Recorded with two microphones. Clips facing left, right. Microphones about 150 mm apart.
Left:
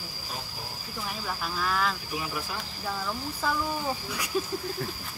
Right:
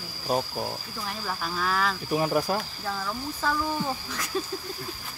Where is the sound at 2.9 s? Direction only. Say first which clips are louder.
Left 3 dB; 10° left (ahead or behind).